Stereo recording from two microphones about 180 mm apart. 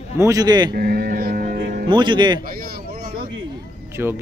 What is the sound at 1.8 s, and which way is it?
Speech, 25° right (ahead or behind).